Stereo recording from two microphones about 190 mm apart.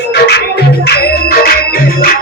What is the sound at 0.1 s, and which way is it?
Music, 60° left (ahead or behind).